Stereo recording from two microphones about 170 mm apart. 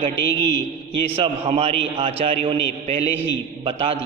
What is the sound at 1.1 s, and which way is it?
A man's voice, 35° right (ahead or behind).